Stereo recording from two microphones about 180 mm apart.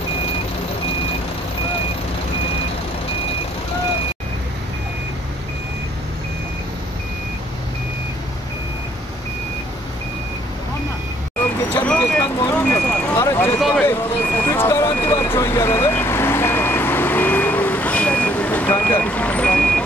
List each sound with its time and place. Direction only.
11.7 s vehicle: 10° left (ahead or behind)